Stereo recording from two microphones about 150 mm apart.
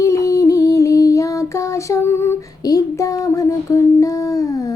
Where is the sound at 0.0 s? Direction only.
20° left (ahead or behind).